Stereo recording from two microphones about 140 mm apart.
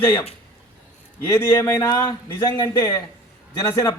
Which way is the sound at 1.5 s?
30° left (ahead or behind).